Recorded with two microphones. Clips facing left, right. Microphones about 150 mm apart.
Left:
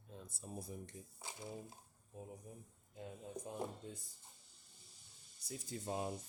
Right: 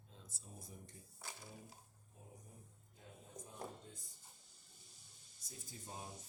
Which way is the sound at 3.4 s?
30° left (ahead or behind).